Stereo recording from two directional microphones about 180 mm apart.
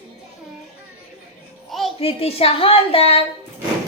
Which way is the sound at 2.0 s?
30° left (ahead or behind).